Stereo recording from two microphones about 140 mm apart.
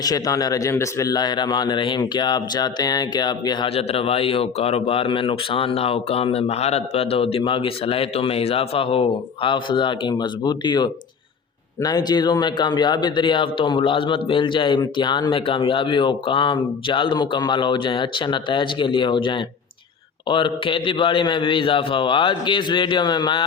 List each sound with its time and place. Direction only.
0.0 s a man's voice: 25° left (ahead or behind)
3.8 s a man's voice: 45° left (ahead or behind)